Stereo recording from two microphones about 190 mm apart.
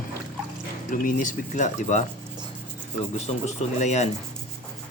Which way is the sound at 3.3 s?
35° left (ahead or behind).